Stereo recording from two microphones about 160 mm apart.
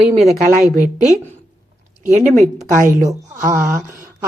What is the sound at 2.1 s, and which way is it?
Speech, 50° right (ahead or behind).